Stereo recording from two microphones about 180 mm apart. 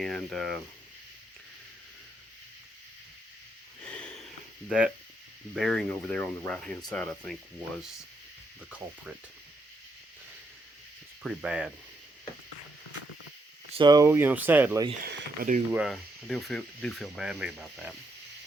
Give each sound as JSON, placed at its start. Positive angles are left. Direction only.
{"t": 0.0, "sound": "speech", "side_deg": 0}
{"t": 3.8, "sound": "snort", "side_deg": 5}
{"t": 5.5, "sound": "speech", "side_deg": 0}
{"t": 11.2, "sound": "speech", "side_deg": -5}
{"t": 13.7, "sound": "speech", "side_deg": -25}
{"t": 15.0, "sound": "speech", "side_deg": -55}
{"t": 15.7, "sound": "speech", "side_deg": 0}